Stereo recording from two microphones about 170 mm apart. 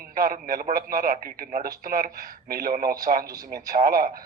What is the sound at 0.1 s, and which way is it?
A man's voice, 55° right (ahead or behind).